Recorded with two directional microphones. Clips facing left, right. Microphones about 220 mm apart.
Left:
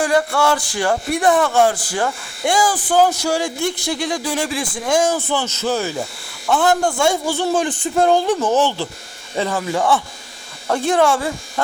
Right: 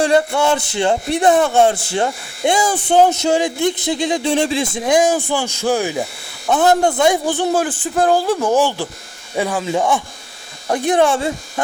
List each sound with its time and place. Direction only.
0.0 s speech: 25° right (ahead or behind)
7.6 s speech: 5° right (ahead or behind); by 11.6 s 20° right (ahead or behind)